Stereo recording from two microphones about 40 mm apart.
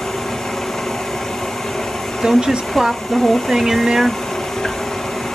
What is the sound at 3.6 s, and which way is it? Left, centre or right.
Speech, centre.